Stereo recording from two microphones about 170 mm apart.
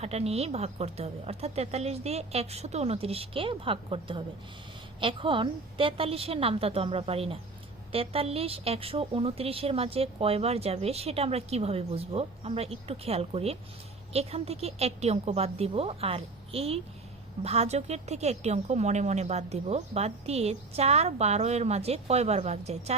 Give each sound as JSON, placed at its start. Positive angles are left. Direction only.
{"t": 0.0, "sound": "a woman's voice", "side_deg": -40}